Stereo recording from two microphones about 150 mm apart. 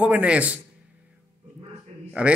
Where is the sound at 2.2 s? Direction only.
5° right (ahead or behind).